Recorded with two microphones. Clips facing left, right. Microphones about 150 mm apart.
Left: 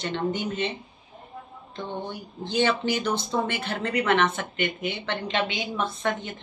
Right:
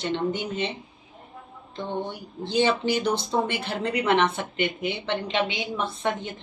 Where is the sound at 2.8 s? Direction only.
30° right (ahead or behind).